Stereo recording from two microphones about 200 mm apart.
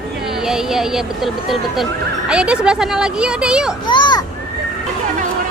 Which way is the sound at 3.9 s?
20° left (ahead or behind).